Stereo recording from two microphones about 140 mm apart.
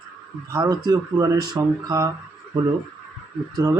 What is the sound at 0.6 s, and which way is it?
Speech, 30° right (ahead or behind).